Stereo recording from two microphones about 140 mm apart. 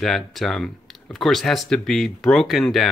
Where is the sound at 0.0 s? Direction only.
Centre (ahead or behind).